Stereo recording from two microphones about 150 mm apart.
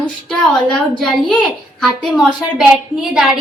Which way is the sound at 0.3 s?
5° left (ahead or behind).